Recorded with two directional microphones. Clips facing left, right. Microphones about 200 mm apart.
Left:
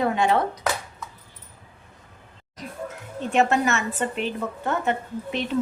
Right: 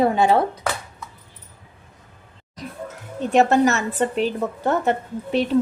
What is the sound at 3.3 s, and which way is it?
A woman's voice, 35° right (ahead or behind).